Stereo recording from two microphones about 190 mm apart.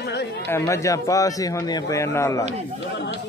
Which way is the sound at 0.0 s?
65° left (ahead or behind).